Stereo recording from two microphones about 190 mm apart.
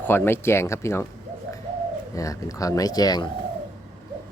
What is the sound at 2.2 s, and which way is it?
Speech, 15° left (ahead or behind).